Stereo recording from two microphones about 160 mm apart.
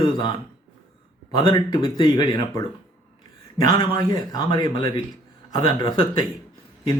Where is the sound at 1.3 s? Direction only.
30° left (ahead or behind).